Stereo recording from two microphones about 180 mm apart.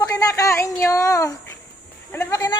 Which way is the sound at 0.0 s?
20° left (ahead or behind).